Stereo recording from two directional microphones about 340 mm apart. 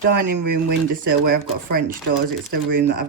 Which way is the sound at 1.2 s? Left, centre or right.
Right.